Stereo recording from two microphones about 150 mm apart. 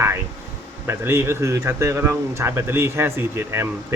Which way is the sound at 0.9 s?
15° right (ahead or behind).